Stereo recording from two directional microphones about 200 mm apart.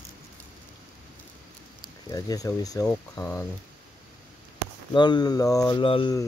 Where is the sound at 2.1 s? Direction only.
20° left (ahead or behind).